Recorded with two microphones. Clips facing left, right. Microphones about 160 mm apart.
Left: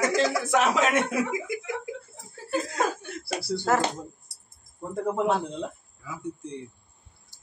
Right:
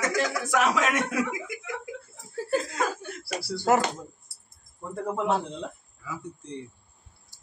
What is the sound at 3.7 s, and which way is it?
Speech, 15° right (ahead or behind).